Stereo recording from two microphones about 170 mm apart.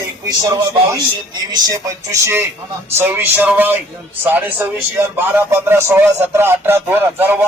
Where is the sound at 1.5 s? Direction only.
20° right (ahead or behind).